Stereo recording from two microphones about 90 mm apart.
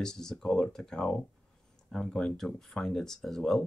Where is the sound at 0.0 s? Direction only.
5° left (ahead or behind).